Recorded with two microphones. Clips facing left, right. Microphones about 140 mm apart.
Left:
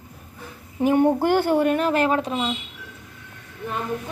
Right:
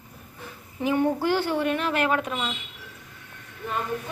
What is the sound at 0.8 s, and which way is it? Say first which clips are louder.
A child's voice: left 5 dB; 50° left (ahead or behind).